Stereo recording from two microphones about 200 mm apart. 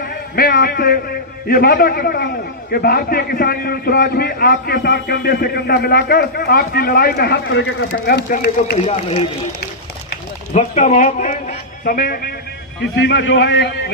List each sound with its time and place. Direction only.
0.1 s a man's voice: 50° left (ahead or behind)
10.5 s a man's voice: 35° left (ahead or behind)
13.0 s a man's voice: 60° left (ahead or behind)